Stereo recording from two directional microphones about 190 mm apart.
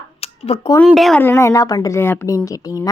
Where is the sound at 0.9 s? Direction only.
Centre (ahead or behind).